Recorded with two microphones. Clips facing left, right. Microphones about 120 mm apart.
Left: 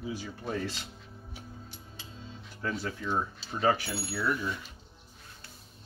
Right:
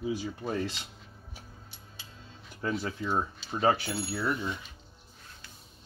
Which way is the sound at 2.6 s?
20° right (ahead or behind).